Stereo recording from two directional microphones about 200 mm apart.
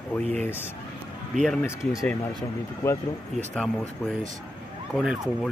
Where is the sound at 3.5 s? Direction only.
Centre (ahead or behind).